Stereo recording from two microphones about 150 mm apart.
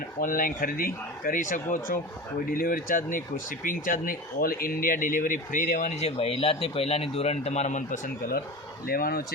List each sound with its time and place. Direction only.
0.2 s speech: 65° left (ahead or behind)
8.9 s speech: 80° left